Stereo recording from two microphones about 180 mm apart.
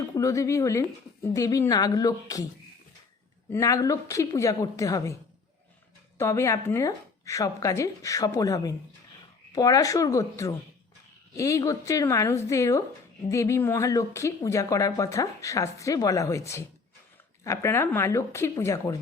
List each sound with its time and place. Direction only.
0.0 s speech: 20° left (ahead or behind)
3.5 s speech: 15° left (ahead or behind)
6.1 s speech: 15° left (ahead or behind)